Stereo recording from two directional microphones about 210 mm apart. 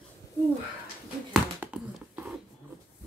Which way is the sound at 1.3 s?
5° right (ahead or behind).